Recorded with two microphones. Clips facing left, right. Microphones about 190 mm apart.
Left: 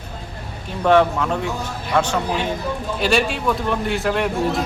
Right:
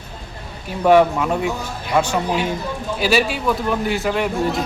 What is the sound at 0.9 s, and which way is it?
A man's voice, 10° right (ahead or behind).